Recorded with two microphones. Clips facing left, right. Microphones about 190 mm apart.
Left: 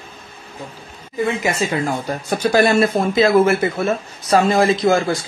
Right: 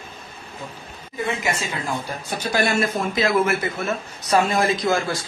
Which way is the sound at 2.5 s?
30° left (ahead or behind).